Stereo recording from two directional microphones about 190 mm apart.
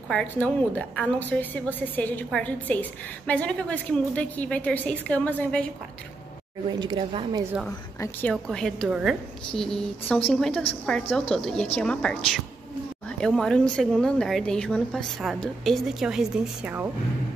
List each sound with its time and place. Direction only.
0.1 s a woman's voice: 5° left (ahead or behind)
6.7 s speech: 25° right (ahead or behind)
8.0 s a woman's voice: 10° left (ahead or behind)
13.2 s a woman's voice: centre (ahead or behind)